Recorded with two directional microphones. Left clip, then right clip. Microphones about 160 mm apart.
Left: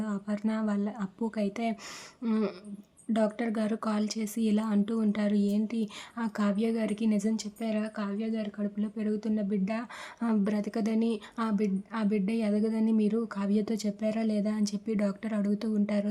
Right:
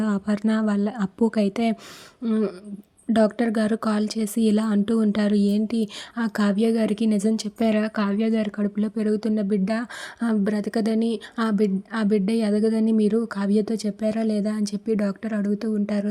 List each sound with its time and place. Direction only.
0.0 s speech: 40° right (ahead or behind)
2.2 s speech: 20° right (ahead or behind)
3.1 s speech: 35° right (ahead or behind)
7.6 s speech: 50° right (ahead or behind); by 16.0 s 25° right (ahead or behind)